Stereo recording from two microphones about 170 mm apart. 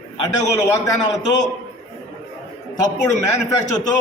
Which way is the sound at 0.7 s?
20° left (ahead or behind).